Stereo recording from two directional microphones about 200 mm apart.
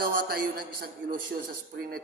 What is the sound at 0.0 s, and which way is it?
A man's voice, 50° right (ahead or behind).